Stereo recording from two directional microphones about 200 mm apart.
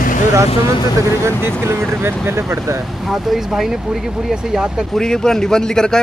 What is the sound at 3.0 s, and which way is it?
Speech, centre (ahead or behind).